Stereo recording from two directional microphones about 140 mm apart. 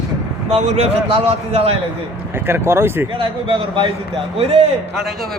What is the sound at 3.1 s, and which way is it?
A man's voice, 35° right (ahead or behind).